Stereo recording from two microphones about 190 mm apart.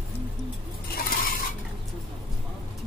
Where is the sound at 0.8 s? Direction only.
50° left (ahead or behind).